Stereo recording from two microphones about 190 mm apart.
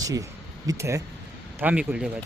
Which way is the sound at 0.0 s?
20° right (ahead or behind).